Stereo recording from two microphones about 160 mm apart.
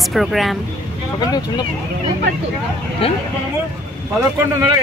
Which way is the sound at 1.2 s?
25° left (ahead or behind).